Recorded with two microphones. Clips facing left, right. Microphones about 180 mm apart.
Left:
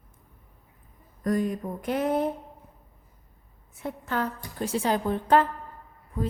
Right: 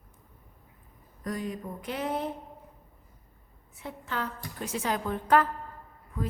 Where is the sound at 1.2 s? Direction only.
50° left (ahead or behind).